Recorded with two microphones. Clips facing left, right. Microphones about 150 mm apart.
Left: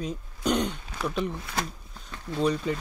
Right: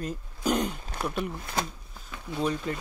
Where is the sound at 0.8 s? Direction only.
50° right (ahead or behind).